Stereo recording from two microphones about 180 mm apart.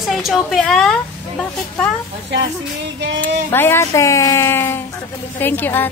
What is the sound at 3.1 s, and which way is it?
Speech, 10° left (ahead or behind).